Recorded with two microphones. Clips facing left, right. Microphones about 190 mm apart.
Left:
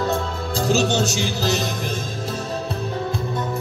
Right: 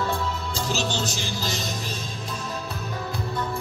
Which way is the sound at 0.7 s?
70° left (ahead or behind).